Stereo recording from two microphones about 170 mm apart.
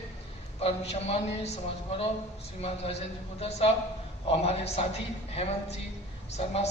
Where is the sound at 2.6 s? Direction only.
35° left (ahead or behind).